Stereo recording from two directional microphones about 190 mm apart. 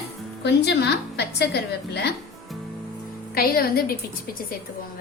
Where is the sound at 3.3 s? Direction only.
50° left (ahead or behind).